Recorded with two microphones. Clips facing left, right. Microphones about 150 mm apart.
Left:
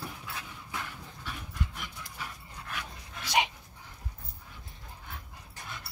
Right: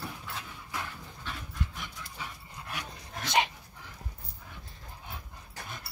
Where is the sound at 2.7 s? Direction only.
40° right (ahead or behind).